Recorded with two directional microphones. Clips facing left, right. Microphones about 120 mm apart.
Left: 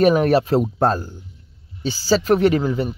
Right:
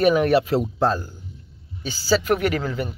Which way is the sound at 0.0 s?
40° left (ahead or behind).